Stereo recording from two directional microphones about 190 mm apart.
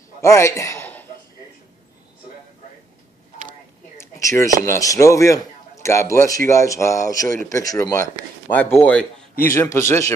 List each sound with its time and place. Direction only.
0.2 s a man's voice: 15° left (ahead or behind)
4.0 s a sound: 15° left (ahead or behind)
4.6 s a man's voice: 15° left (ahead or behind)